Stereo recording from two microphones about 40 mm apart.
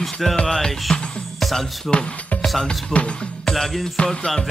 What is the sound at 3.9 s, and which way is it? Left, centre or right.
Speech, centre.